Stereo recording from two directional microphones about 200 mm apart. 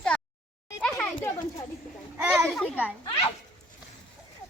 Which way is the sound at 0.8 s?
5° left (ahead or behind).